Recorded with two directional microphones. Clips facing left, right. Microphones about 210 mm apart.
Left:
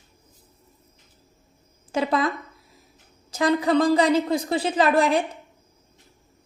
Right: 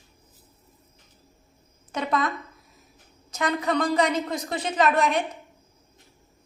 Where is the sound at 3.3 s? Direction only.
30° left (ahead or behind).